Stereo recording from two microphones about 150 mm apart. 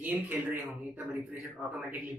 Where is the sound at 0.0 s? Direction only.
15° right (ahead or behind).